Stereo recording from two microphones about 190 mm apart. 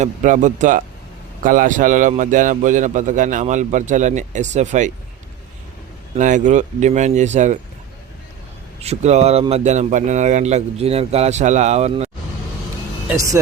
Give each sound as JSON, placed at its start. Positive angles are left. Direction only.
{"t": 0.0, "sound": "a man's voice", "side_deg": -40}
{"t": 6.1, "sound": "a man's voice", "side_deg": -40}
{"t": 8.8, "sound": "a man's voice", "side_deg": -35}
{"t": 13.1, "sound": "speech", "side_deg": -15}